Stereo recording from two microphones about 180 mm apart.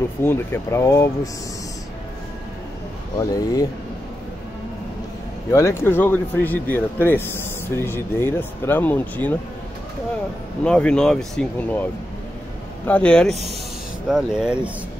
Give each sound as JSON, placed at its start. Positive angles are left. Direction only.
{"t": 0.2, "sound": "speech", "side_deg": 10}
{"t": 3.2, "sound": "speech", "side_deg": 20}
{"t": 5.5, "sound": "speech", "side_deg": 15}
{"t": 10.6, "sound": "speech", "side_deg": 5}